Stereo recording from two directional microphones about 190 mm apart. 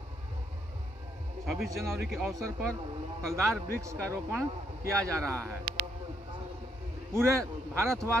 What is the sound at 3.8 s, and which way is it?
Speech, 15° right (ahead or behind).